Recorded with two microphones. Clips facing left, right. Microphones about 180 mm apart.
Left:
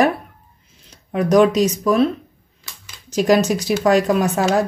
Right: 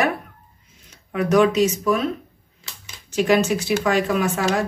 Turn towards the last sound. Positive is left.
turn(degrees=40)  # may be behind; listen again after turning